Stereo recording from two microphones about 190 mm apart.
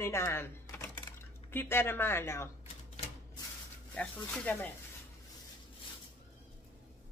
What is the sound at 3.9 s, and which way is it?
Speech, 5° left (ahead or behind).